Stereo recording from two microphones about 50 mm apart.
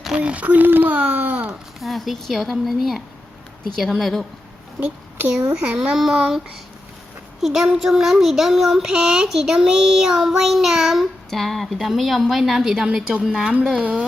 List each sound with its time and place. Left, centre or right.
0.2 s speech: right
1.8 s a woman's voice: centre
4.8 s a woman's voice: right
5.3 s child singing: centre
7.4 s a woman's voice: centre
7.8 s child singing: centre
11.3 s a woman's voice: centre
12.8 s child singing: centre